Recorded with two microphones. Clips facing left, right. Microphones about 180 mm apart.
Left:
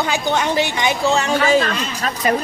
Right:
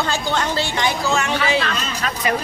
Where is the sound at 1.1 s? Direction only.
35° left (ahead or behind).